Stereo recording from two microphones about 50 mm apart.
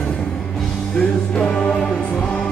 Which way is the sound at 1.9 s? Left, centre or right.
Left.